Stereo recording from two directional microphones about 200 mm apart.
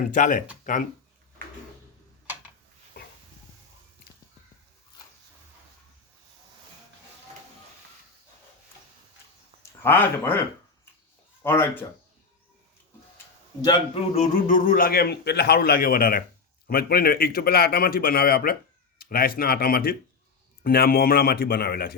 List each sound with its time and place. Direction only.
0.1 s speech: 40° left (ahead or behind)
9.6 s speech: 10° left (ahead or behind)
11.4 s speech: 10° left (ahead or behind)
13.7 s a man's voice: 30° left (ahead or behind); by 21.9 s 50° left (ahead or behind)